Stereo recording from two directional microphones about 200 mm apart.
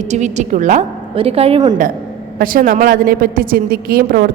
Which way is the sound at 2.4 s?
45° right (ahead or behind).